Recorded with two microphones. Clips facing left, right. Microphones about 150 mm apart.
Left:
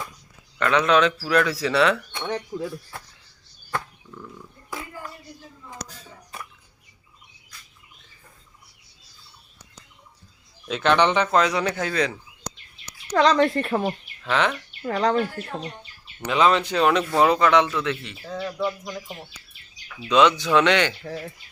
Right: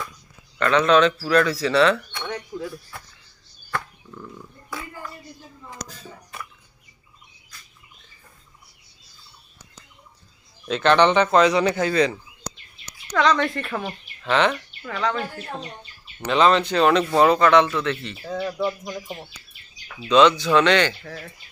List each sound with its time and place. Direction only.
0.6 s speech: 10° left (ahead or behind)
2.1 s speech: 25° left (ahead or behind)
10.7 s speech: 5° left (ahead or behind)
13.1 s speech: 35° left (ahead or behind)
14.3 s speech: 5° left (ahead or behind)
14.8 s speech: 40° left (ahead or behind)
16.2 s speech: 5° left (ahead or behind)
18.3 s speech: 10° right (ahead or behind)
20.0 s speech: 10° left (ahead or behind)
21.0 s speech: 30° left (ahead or behind)